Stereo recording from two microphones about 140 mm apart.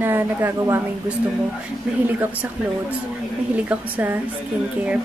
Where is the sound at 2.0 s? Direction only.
10° right (ahead or behind).